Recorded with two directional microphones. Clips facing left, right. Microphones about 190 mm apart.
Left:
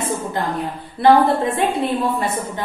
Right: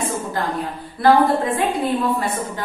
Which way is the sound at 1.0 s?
25° left (ahead or behind).